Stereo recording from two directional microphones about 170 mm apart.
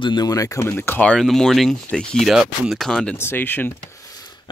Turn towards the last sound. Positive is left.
turn(degrees=10)  # may be behind; listen again after turning